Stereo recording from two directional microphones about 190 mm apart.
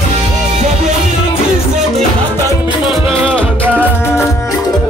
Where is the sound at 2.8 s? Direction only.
Centre (ahead or behind).